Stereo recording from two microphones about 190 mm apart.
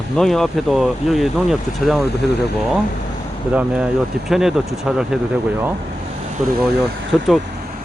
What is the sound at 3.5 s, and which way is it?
Speech, 5° right (ahead or behind).